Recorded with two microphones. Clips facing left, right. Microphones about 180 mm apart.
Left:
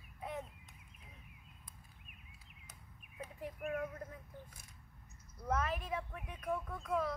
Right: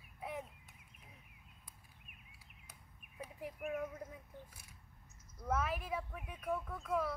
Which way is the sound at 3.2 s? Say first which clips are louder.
Left 1 dB; 5° right (ahead or behind).